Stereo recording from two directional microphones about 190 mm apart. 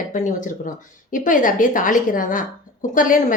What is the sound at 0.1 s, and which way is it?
Speech, 40° left (ahead or behind).